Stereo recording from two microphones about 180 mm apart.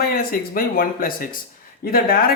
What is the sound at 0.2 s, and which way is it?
Speech, 55° left (ahead or behind).